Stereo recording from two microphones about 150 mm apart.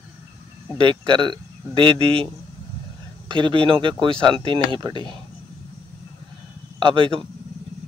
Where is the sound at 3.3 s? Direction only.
35° right (ahead or behind).